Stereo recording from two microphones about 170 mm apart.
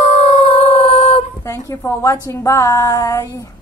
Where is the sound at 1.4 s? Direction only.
20° left (ahead or behind).